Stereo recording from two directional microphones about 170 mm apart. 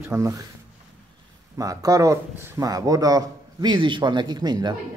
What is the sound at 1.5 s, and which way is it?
Speech, 20° right (ahead or behind).